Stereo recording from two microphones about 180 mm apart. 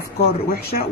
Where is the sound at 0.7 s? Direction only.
45° left (ahead or behind).